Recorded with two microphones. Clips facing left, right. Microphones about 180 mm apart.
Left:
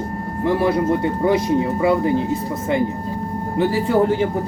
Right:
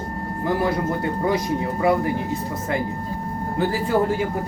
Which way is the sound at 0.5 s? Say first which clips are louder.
Left 6 dB; 25° left (ahead or behind).